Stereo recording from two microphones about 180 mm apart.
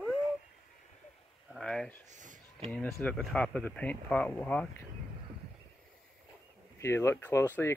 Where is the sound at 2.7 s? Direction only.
10° left (ahead or behind).